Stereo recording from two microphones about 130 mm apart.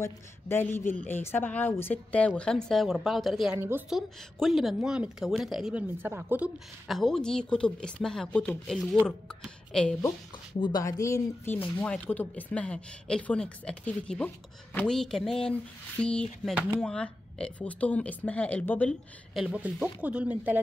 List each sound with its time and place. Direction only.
0.0 s speech: 15° left (ahead or behind); by 3.5 s centre (ahead or behind)
3.5 s speech: 15° right (ahead or behind)
3.9 s speech: centre (ahead or behind)
6.9 s speech: centre (ahead or behind)
10.6 s speech: 30° left (ahead or behind); by 18.9 s 10° left (ahead or behind)
19.3 s speech: 10° right (ahead or behind)